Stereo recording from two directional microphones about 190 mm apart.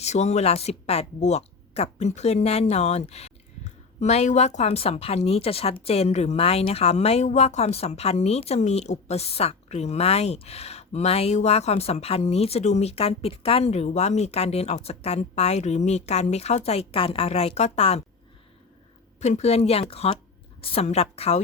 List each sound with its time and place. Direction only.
0.0 s a woman's voice: 35° left (ahead or behind)
19.2 s a woman's voice: 35° left (ahead or behind)